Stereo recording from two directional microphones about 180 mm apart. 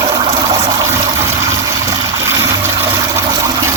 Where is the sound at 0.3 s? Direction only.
30° right (ahead or behind).